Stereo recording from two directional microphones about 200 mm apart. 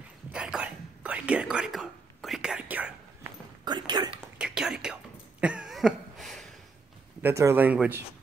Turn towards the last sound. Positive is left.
turn(degrees=-10)  # may be behind; listen again after turning